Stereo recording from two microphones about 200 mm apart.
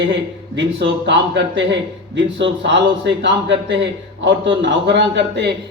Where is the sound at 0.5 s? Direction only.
65° right (ahead or behind).